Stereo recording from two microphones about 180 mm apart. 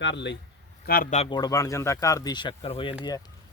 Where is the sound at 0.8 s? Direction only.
55° left (ahead or behind).